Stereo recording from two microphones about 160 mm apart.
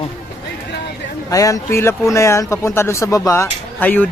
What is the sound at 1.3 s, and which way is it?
Speech, 20° left (ahead or behind).